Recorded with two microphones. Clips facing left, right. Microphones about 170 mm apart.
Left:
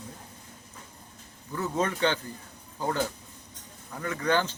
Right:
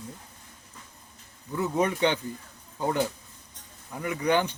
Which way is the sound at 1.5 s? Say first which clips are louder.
Right 3 dB; 15° right (ahead or behind).